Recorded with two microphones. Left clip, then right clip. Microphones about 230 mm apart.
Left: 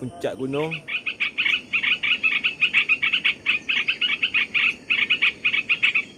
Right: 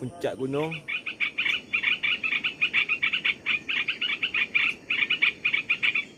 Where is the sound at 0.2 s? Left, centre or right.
Centre.